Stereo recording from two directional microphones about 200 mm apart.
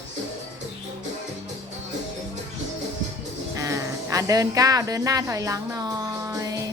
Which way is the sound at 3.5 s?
15° right (ahead or behind).